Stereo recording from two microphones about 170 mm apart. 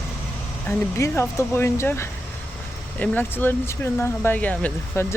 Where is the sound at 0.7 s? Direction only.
15° left (ahead or behind).